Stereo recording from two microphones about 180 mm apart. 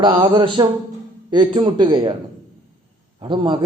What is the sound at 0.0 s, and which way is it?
A man's voice, 25° right (ahead or behind).